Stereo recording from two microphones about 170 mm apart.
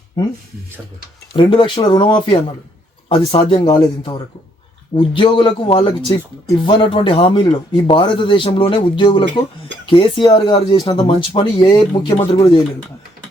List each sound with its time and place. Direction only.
1.3 s speech: 30° left (ahead or behind)